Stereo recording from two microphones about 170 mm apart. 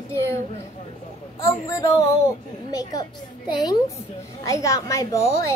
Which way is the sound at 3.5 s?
25° left (ahead or behind).